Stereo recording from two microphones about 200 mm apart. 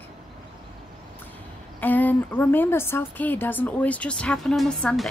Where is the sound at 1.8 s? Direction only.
10° left (ahead or behind).